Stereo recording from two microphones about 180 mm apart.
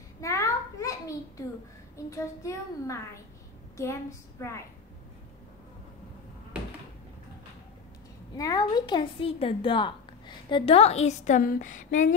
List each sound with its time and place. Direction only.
0.2 s a sound: 15° left (ahead or behind)
2.0 s a child's voice: 15° left (ahead or behind)
8.4 s a woman's voice: 20° left (ahead or behind); by 12.1 s 45° left (ahead or behind)